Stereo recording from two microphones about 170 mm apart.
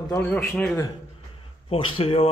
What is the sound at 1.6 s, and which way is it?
Speech, 30° left (ahead or behind).